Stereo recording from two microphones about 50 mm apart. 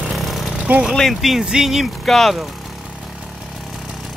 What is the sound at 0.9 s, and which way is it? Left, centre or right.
Speech, centre.